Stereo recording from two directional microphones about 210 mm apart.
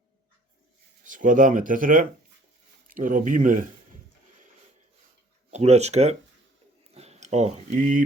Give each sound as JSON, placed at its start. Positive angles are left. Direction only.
{"t": 1.0, "sound": "speech", "side_deg": -40}
{"t": 5.5, "sound": "speech", "side_deg": -30}